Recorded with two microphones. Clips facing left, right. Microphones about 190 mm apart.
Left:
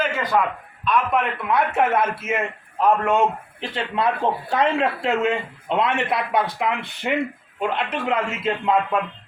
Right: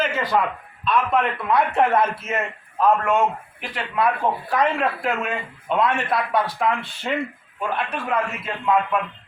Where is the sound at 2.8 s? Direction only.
20° left (ahead or behind).